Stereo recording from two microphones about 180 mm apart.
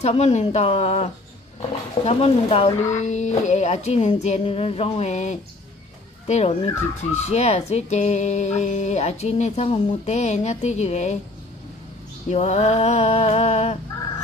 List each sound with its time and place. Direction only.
0.0 s speech: 40° left (ahead or behind)
12.3 s speech: 35° left (ahead or behind)